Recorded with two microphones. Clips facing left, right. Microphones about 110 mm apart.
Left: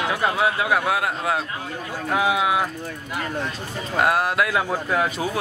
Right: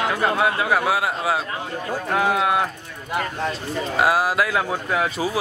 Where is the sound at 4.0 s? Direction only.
5° right (ahead or behind).